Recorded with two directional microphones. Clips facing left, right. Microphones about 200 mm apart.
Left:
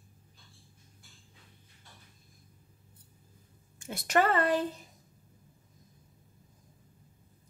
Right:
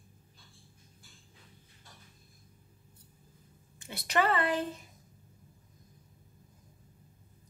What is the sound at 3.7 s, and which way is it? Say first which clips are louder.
Speech: left 3 dB; 45° left (ahead or behind).